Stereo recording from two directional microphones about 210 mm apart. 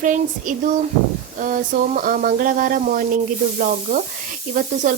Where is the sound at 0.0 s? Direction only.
40° right (ahead or behind).